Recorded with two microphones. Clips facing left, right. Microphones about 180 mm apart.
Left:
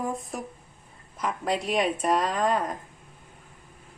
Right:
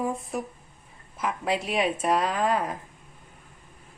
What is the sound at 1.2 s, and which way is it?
Speech, 5° right (ahead or behind).